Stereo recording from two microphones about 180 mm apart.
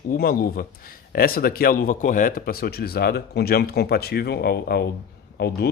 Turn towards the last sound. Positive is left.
turn(degrees=60)  # may be behind; listen again after turning